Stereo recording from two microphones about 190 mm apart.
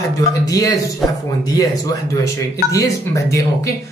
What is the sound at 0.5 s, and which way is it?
A man's voice, 20° left (ahead or behind).